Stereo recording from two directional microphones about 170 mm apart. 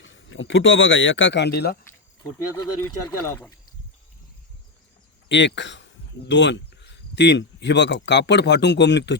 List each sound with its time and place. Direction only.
0.0 s speech: 90° left; by 1.8 s 70° left (ahead or behind)
1.9 s speech: 20° left (ahead or behind)
5.3 s speech: 90° left